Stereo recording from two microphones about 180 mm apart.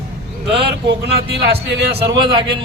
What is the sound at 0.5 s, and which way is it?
Speech, 65° right (ahead or behind).